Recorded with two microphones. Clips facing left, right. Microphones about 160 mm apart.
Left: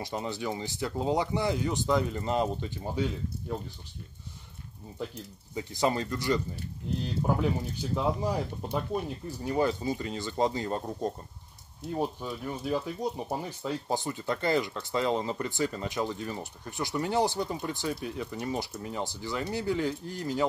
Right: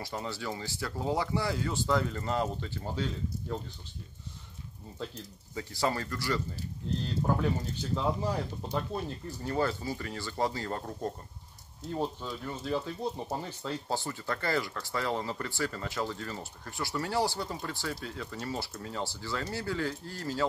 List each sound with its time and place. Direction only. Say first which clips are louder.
0.0 s speech: left 3 dB; 20° left (ahead or behind)
5.5 s speech: left 3 dB; 20° left (ahead or behind)